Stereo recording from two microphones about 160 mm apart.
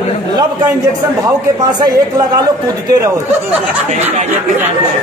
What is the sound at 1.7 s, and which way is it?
Speech, 25° right (ahead or behind).